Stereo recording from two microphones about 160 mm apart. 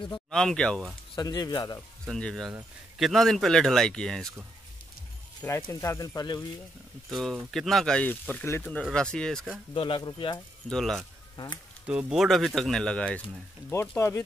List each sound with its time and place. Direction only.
0.3 s speech: 5° left (ahead or behind)
1.1 s speech: 25° left (ahead or behind)
2.0 s speech: 5° left (ahead or behind)
5.6 s speech: 20° left (ahead or behind)
7.1 s speech: centre (ahead or behind)
9.8 s speech: 30° left (ahead or behind)
10.7 s speech: 5° left (ahead or behind)
11.3 s speech: 30° left (ahead or behind)
11.9 s speech: 5° right (ahead or behind)
13.7 s speech: 15° left (ahead or behind)